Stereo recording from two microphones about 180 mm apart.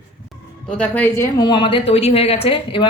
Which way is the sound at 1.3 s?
25° left (ahead or behind).